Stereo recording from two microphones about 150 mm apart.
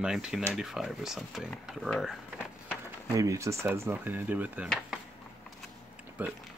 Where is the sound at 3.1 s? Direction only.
20° right (ahead or behind).